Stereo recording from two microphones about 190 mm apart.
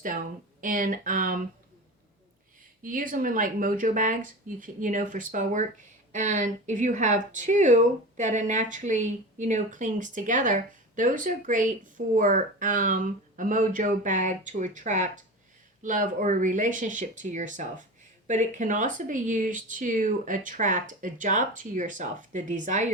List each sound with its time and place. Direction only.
0.6 s speech: 45° right (ahead or behind)
2.8 s speech: 45° right (ahead or behind)